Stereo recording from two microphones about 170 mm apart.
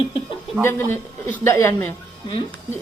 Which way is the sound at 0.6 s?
15° left (ahead or behind).